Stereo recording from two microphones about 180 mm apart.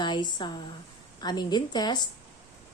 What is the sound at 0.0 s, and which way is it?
A woman's voice, 25° left (ahead or behind).